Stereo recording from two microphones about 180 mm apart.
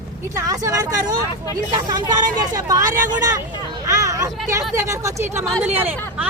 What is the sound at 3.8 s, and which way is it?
Hubbub, 15° right (ahead or behind).